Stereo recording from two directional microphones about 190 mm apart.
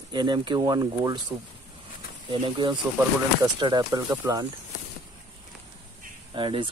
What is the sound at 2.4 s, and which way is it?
Speech, 25° right (ahead or behind).